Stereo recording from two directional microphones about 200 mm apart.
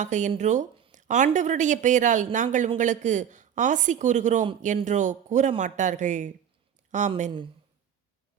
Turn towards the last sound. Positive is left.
turn(degrees=-35)  # may be behind; listen again after turning